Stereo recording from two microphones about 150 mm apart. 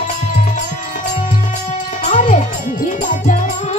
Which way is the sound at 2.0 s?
60° left (ahead or behind).